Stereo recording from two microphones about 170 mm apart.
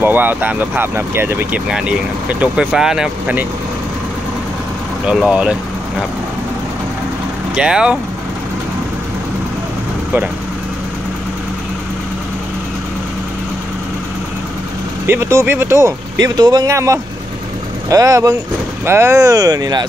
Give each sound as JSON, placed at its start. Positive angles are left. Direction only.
{"t": 0.0, "sound": "speech", "side_deg": -10}
{"t": 5.0, "sound": "speech", "side_deg": -5}
{"t": 7.5, "sound": "speech", "side_deg": -5}
{"t": 15.0, "sound": "speech", "side_deg": -15}